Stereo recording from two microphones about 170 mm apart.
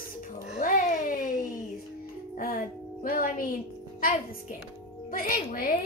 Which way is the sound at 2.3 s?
55° left (ahead or behind).